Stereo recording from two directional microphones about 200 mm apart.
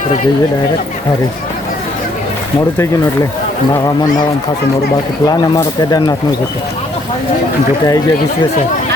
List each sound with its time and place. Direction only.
5.2 s speech: 20° left (ahead or behind)